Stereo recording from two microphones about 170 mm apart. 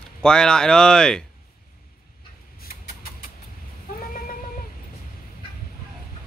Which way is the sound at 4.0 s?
55° left (ahead or behind).